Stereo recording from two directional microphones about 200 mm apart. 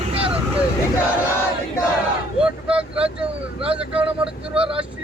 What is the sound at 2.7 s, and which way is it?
Vehicle, 5° right (ahead or behind).